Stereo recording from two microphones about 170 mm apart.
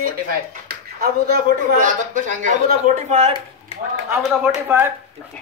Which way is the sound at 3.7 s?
35° left (ahead or behind).